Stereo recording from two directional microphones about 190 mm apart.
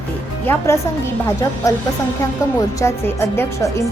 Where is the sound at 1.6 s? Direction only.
15° left (ahead or behind).